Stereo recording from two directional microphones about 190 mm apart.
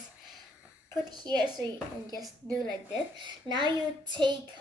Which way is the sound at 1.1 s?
20° right (ahead or behind).